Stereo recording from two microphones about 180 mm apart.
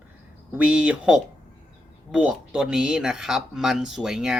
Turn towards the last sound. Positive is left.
turn(degrees=-5)  # may be behind; listen again after turning